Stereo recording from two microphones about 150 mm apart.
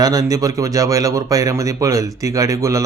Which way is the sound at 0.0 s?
25° right (ahead or behind).